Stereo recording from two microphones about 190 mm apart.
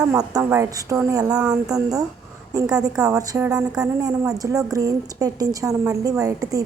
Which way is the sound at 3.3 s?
5° right (ahead or behind).